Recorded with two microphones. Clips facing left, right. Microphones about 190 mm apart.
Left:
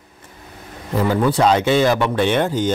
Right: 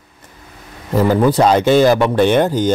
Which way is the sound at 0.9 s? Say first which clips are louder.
Right 4 dB; 40° right (ahead or behind).